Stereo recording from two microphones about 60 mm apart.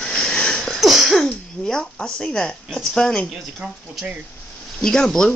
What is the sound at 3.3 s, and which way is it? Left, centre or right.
Speech, centre.